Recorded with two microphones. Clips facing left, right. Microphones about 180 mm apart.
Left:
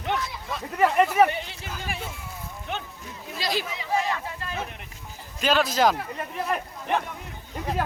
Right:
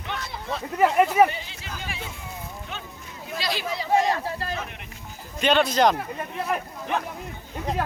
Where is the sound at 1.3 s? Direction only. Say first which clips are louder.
Left 4 dB; 60° left (ahead or behind).